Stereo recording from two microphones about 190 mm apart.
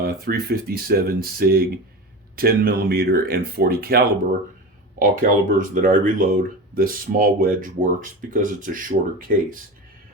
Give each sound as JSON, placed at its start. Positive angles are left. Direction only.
{"t": 0.0, "sound": "speech", "side_deg": -55}